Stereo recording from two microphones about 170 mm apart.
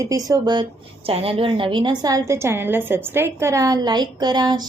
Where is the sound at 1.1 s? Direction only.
35° right (ahead or behind).